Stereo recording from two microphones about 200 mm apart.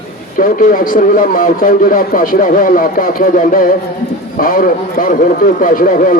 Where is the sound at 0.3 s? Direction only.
45° left (ahead or behind).